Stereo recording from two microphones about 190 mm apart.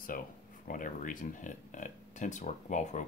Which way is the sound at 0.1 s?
50° left (ahead or behind).